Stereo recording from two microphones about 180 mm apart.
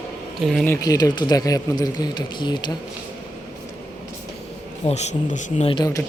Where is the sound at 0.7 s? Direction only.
20° left (ahead or behind).